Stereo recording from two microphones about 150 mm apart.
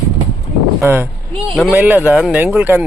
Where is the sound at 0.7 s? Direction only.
15° right (ahead or behind).